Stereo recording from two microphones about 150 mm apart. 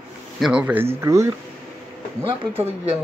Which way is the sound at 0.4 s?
5° right (ahead or behind).